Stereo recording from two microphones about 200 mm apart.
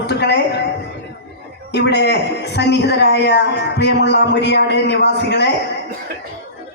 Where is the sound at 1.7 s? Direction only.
60° left (ahead or behind).